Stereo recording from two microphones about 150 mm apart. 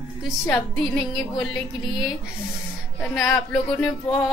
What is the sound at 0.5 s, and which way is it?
A woman's voice, 10° left (ahead or behind).